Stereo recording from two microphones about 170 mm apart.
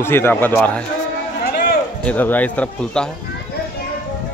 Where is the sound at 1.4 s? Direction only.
65° left (ahead or behind).